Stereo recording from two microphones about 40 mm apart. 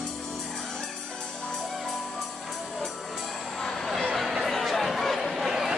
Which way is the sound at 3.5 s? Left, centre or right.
Centre.